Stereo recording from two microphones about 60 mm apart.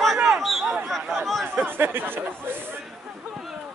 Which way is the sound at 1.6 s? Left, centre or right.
Right.